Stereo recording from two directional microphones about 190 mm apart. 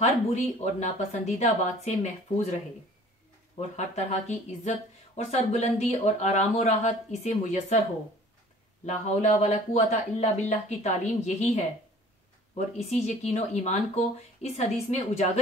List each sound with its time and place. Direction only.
0.0 s speech: 35° left (ahead or behind)
3.5 s speech: 35° left (ahead or behind)
8.8 s speech: 35° left (ahead or behind)